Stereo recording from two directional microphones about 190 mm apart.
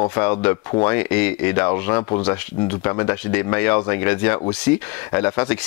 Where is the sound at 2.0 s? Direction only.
25° left (ahead or behind).